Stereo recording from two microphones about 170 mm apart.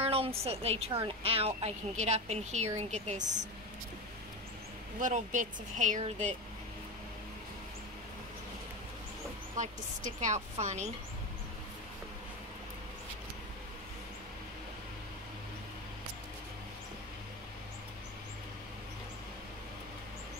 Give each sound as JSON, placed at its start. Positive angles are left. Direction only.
{"t": 0.0, "sound": "a sound", "side_deg": -35}
{"t": 0.4, "sound": "a woman's voice", "side_deg": -35}
{"t": 5.0, "sound": "speech", "side_deg": -50}
{"t": 9.6, "sound": "speech", "side_deg": -45}